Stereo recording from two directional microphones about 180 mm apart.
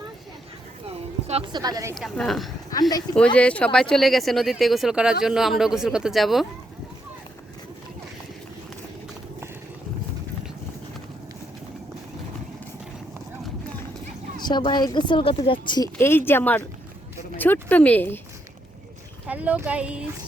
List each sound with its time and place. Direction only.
1.3 s a woman's voice: 30° right (ahead or behind)
1.6 s speech: 20° right (ahead or behind)
2.0 s speech: centre (ahead or behind)
14.4 s a woman's voice: 25° left (ahead or behind)
16.0 s speech: 10° left (ahead or behind)
19.3 s speech: 10° right (ahead or behind)